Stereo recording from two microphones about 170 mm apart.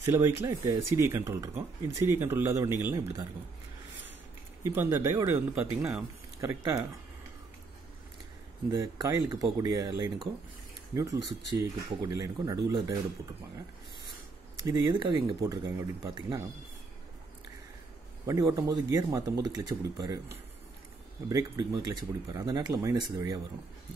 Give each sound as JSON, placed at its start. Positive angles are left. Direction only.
{"t": 0.0, "sound": "speech", "side_deg": -15}
{"t": 4.6, "sound": "speech", "side_deg": -15}
{"t": 8.6, "sound": "speech", "side_deg": -20}
{"t": 14.7, "sound": "speech", "side_deg": -20}
{"t": 18.2, "sound": "speech", "side_deg": -20}